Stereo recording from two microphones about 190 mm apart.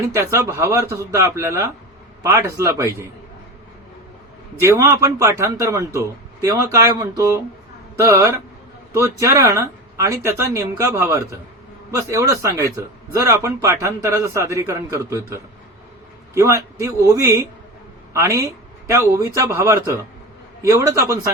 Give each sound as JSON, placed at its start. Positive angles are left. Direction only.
{"t": 0.0, "sound": "a man's voice", "side_deg": -15}
{"t": 4.6, "sound": "a man's voice", "side_deg": -15}